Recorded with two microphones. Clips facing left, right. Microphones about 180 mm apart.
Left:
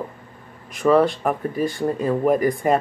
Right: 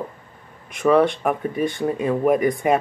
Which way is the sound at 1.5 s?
35° left (ahead or behind).